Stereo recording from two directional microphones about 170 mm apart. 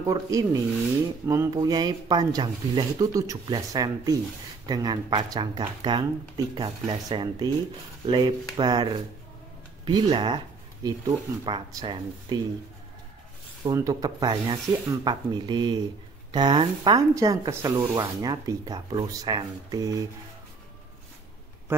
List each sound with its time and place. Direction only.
0.0 s speech: 20° right (ahead or behind)
13.7 s speech: 20° right (ahead or behind)